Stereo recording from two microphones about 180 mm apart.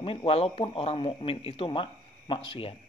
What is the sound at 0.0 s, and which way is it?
Speech, 30° left (ahead or behind).